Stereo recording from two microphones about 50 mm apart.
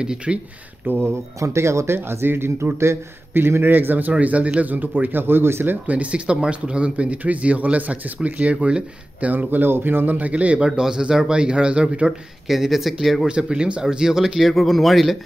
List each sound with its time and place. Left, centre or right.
0.0 s speech: centre
0.8 s speech: right
1.4 s speech: right
2.0 s speech: right
5.2 s speech: right
5.9 s speech: right
9.3 s speech: right
10.8 s speech: centre
12.4 s speech: centre
13.3 s speech: centre
14.5 s speech: centre